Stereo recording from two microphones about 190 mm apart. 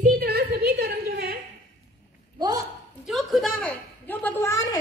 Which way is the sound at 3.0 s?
Centre (ahead or behind).